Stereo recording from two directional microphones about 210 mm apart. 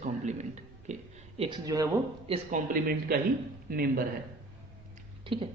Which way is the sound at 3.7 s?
45° right (ahead or behind).